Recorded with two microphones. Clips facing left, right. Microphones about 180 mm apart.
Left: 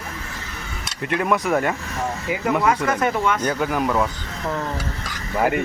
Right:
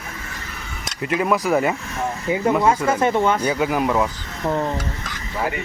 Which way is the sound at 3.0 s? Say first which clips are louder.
Right 3 dB; 30° right (ahead or behind).